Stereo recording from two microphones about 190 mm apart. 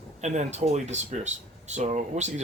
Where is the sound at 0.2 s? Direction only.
35° right (ahead or behind).